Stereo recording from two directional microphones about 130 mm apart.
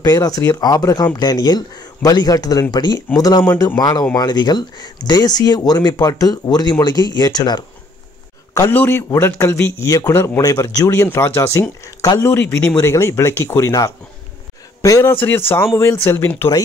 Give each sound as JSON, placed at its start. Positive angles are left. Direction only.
{"t": 0.0, "sound": "speech", "side_deg": 30}
{"t": 8.5, "sound": "speech", "side_deg": 15}